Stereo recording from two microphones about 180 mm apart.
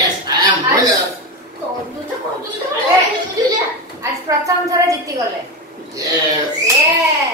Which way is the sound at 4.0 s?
15° right (ahead or behind).